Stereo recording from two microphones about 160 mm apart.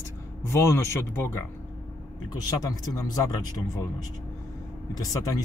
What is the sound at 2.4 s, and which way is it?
A man's voice, 20° left (ahead or behind).